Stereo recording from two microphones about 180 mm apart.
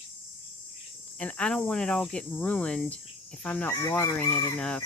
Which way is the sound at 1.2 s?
5° left (ahead or behind).